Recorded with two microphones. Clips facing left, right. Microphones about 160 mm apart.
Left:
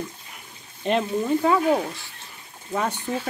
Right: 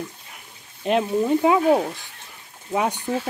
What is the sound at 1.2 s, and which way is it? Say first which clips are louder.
Speech: right 3 dB; 15° right (ahead or behind).